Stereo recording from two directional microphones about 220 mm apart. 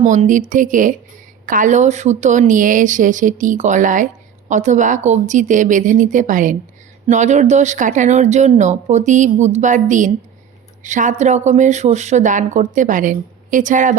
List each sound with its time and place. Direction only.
0.0 s speech: 30° right (ahead or behind)